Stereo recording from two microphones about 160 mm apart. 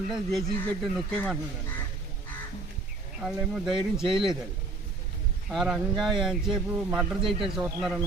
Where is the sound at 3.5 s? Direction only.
5° right (ahead or behind).